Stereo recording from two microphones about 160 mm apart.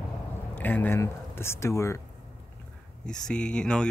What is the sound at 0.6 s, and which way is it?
Speech, 10° left (ahead or behind).